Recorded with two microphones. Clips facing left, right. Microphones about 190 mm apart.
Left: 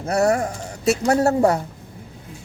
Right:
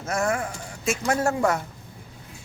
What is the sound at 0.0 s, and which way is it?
Speech, 35° left (ahead or behind).